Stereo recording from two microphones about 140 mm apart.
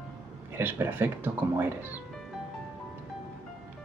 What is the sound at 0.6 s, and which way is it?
Speech, 15° right (ahead or behind).